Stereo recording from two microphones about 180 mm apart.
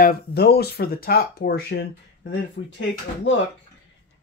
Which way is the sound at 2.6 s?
90° left.